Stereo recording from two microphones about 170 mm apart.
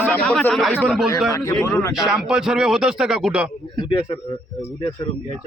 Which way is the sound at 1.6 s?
20° left (ahead or behind).